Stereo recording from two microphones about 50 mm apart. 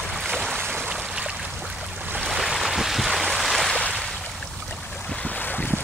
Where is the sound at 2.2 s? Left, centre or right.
Centre.